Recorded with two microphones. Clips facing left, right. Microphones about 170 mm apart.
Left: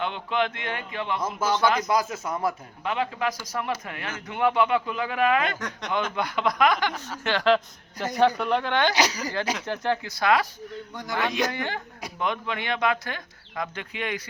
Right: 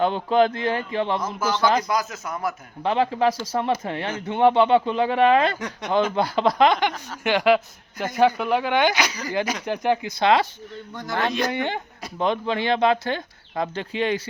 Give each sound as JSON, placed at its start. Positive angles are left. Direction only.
{"t": 0.0, "sound": "speech", "side_deg": -35}
{"t": 1.2, "sound": "speech", "side_deg": 30}
{"t": 2.8, "sound": "a man's voice", "side_deg": -30}
{"t": 5.5, "sound": "a man's voice", "side_deg": -10}
{"t": 5.9, "sound": "a man's voice", "side_deg": -30}
{"t": 10.9, "sound": "speech", "side_deg": 15}
{"t": 11.5, "sound": "a man's voice", "side_deg": -20}
{"t": 12.2, "sound": "speech", "side_deg": -30}